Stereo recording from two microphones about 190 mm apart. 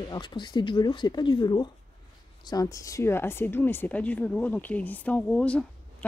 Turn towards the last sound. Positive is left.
turn(degrees=5)  # may be behind; listen again after turning